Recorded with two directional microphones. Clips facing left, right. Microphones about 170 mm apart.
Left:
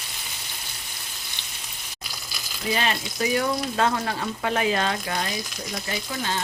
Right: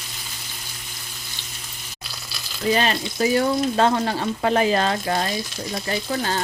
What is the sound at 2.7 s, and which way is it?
Speech, 35° right (ahead or behind).